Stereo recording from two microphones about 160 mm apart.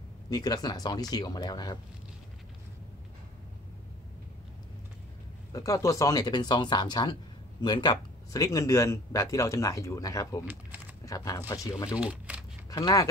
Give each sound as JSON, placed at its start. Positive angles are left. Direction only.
{"t": 0.3, "sound": "speech", "side_deg": 25}
{"t": 5.5, "sound": "speech", "side_deg": 20}
{"t": 10.4, "sound": "speech", "side_deg": -10}
{"t": 11.1, "sound": "speech", "side_deg": 20}
{"t": 12.0, "sound": "crumpling", "side_deg": -5}
{"t": 12.6, "sound": "speech", "side_deg": 25}